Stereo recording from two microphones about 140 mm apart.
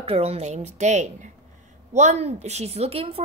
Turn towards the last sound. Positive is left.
turn(degrees=-45)  # may be behind; listen again after turning